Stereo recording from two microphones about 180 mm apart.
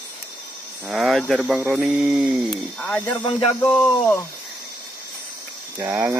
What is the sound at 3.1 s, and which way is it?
Music, 30° left (ahead or behind).